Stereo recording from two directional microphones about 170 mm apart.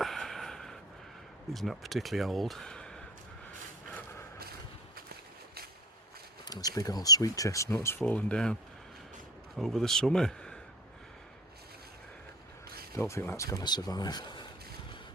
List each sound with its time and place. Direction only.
0.0 s snort: centre (ahead or behind)
1.5 s speech: centre (ahead or behind)
6.4 s speech: 20° left (ahead or behind); by 8.5 s 5° left (ahead or behind)
9.6 s speech: centre (ahead or behind)
13.0 s speech: 15° left (ahead or behind)